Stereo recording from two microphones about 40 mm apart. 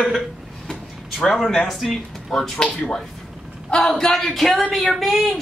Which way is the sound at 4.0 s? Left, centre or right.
Centre.